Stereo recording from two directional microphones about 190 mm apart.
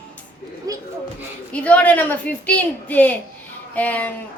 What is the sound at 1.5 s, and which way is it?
A woman's voice, 5° left (ahead or behind).